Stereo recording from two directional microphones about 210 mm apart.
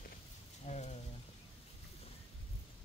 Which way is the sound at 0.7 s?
30° left (ahead or behind).